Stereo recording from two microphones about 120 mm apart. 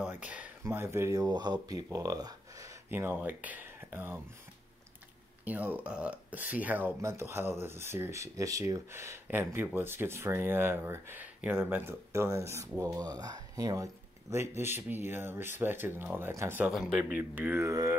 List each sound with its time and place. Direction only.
0.0 s speech: 15° right (ahead or behind)
5.4 s speech: 15° right (ahead or behind)
16.6 s speech: 5° right (ahead or behind)
17.0 s speech: 15° right (ahead or behind)